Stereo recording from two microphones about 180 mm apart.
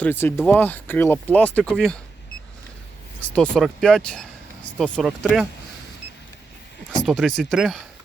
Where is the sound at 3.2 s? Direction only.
5° left (ahead or behind).